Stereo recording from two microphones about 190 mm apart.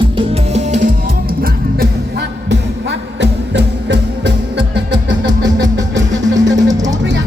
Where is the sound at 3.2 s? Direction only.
65° right (ahead or behind).